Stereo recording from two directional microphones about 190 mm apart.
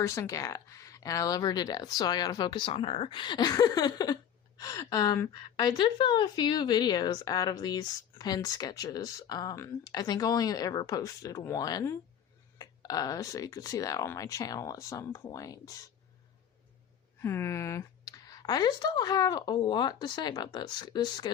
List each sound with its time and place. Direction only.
0.0 s speech: 15° left (ahead or behind)
17.2 s speech: 15° left (ahead or behind)